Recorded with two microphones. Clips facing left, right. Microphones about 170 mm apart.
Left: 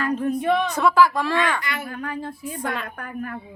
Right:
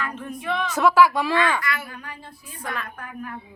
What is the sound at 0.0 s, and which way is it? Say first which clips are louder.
Speech: left 9 dB; 35° left (ahead or behind).